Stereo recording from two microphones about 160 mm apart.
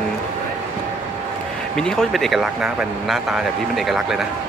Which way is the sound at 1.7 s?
5° left (ahead or behind).